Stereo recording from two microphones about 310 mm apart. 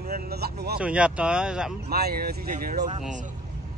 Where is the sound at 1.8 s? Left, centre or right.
Right.